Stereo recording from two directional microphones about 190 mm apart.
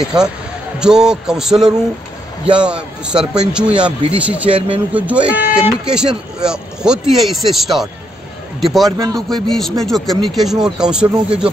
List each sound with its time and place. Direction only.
0.0 s speech: 5° right (ahead or behind)
4.5 s speech: 30° right (ahead or behind)
4.9 s speech: 5° right (ahead or behind)